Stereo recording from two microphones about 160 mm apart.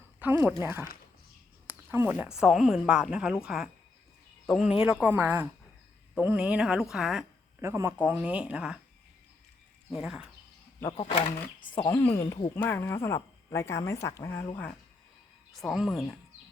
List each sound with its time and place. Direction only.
0.2 s speech: 10° right (ahead or behind)
7.6 s speech: 15° right (ahead or behind)
10.0 s speech: 5° right (ahead or behind)
10.8 s speech: 35° left (ahead or behind)
11.8 s a woman's voice: 15° left (ahead or behind)
15.6 s speech: centre (ahead or behind)